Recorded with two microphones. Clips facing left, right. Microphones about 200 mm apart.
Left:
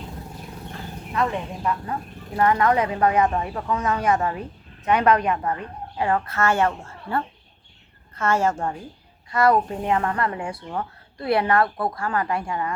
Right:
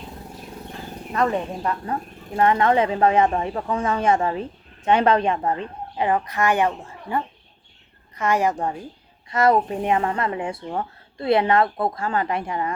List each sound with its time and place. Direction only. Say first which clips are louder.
1.1 s speech: right 3 dB; 40° right (ahead or behind)
2.3 s speech: right 1 dB; 25° right (ahead or behind)